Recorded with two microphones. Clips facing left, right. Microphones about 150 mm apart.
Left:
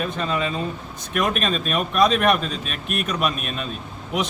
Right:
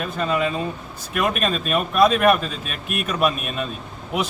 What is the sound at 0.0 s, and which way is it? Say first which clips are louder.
Speech: right 2 dB; 5° right (ahead or behind).